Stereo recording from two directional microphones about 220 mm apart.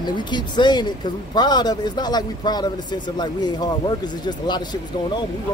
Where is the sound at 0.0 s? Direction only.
20° left (ahead or behind).